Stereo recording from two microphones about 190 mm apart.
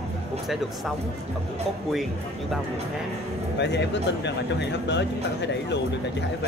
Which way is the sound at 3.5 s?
65° left (ahead or behind).